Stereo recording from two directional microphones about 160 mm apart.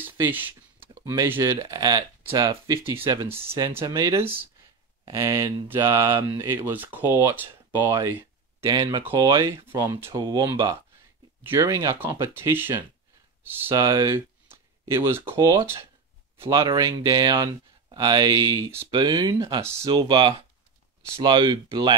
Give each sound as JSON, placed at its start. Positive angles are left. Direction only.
{"t": 0.0, "sound": "speech", "side_deg": -15}
{"t": 11.4, "sound": "speech", "side_deg": -15}
{"t": 13.7, "sound": "speech", "side_deg": -25}
{"t": 18.9, "sound": "speech", "side_deg": -30}
{"t": 19.6, "sound": "speech", "side_deg": -20}